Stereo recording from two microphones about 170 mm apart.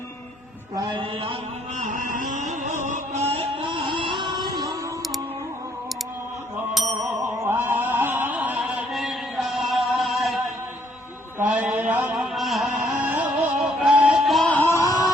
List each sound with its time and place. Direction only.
0.8 s mantra: 30° right (ahead or behind)
1.8 s music: 50° right (ahead or behind); by 4.7 s 20° right (ahead or behind)
7.0 s music: 15° right (ahead or behind); by 10.4 s centre (ahead or behind)
11.3 s a sound: 10° right (ahead or behind); by 15.1 s 15° left (ahead or behind)